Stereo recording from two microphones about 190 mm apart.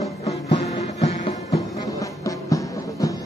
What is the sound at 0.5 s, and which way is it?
Music, 35° left (ahead or behind).